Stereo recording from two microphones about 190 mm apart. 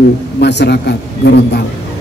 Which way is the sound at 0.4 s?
65° left (ahead or behind).